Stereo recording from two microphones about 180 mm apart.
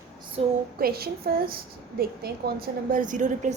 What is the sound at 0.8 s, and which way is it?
A woman's voice, 60° right (ahead or behind).